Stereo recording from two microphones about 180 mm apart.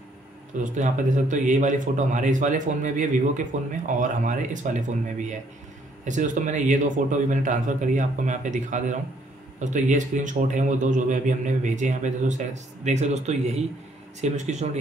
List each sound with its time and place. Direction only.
0.7 s a man's voice: 45° right (ahead or behind)
6.0 s a man's voice: 45° right (ahead or behind)